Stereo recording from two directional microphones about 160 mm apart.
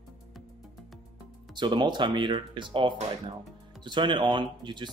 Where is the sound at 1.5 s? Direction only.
30° right (ahead or behind).